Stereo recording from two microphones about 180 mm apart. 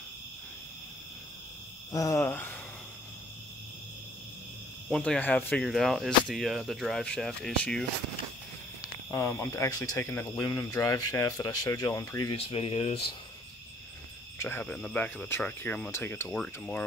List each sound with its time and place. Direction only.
1.9 s speech: 20° left (ahead or behind)
4.8 s speech: 5° left (ahead or behind)
9.1 s speech: 15° left (ahead or behind)
12.4 s speech: 30° left (ahead or behind)
14.4 s speech: 10° left (ahead or behind)